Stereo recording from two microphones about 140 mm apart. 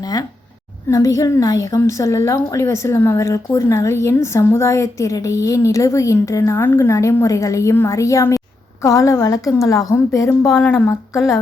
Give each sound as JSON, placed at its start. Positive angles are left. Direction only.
{"t": 0.9, "sound": "a woman's voice", "side_deg": 25}